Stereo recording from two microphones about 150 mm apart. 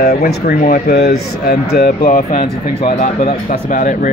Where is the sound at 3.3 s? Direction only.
60° left (ahead or behind).